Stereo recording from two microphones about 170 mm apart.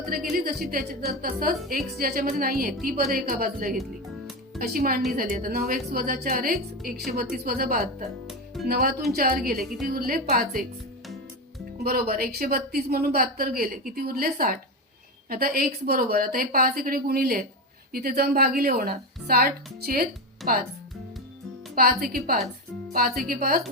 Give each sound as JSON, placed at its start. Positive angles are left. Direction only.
{"t": 0.0, "sound": "speech", "side_deg": -60}
{"t": 11.8, "sound": "speech", "side_deg": -60}
{"t": 21.8, "sound": "speech", "side_deg": -60}